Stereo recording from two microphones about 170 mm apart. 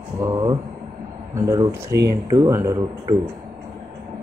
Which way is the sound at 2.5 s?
15° right (ahead or behind).